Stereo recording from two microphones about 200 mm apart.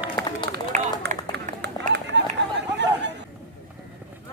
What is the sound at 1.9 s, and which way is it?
Chatter, 60° right (ahead or behind).